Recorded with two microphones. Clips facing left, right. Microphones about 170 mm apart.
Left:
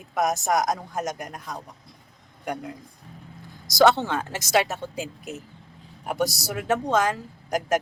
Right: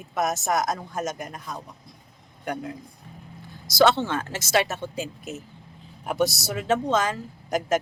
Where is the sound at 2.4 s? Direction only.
Centre (ahead or behind).